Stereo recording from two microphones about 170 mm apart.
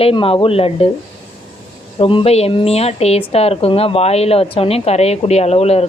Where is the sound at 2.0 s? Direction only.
30° left (ahead or behind).